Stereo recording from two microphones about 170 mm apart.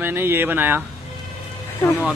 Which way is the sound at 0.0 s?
15° right (ahead or behind).